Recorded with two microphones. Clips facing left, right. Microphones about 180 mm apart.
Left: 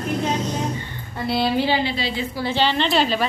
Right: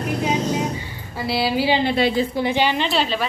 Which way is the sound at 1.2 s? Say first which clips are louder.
Even; 5° right (ahead or behind).